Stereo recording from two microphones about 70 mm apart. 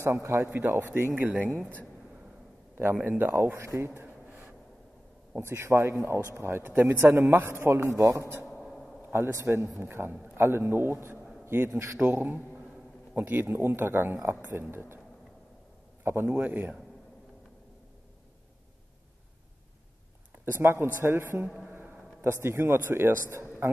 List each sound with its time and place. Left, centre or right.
0.0 s a man's voice: right
2.8 s speech: right
5.5 s a man's voice: right
8.5 s a sound: centre
9.1 s a man's voice: right
12.0 s a man's voice: right
16.0 s a man's voice: right
20.4 s speech: right